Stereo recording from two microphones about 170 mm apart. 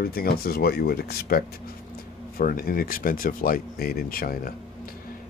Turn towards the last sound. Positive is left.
turn(degrees=60)  # may be behind; listen again after turning